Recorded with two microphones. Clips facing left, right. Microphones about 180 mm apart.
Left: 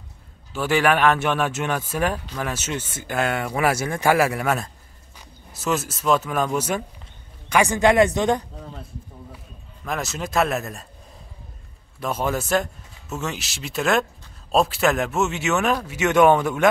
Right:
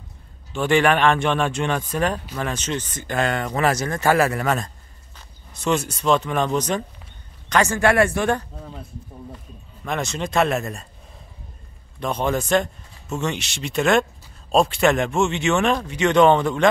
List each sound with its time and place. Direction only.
0.5 s speech: 5° left (ahead or behind)
9.8 s speech: centre (ahead or behind)
12.0 s speech: 5° left (ahead or behind)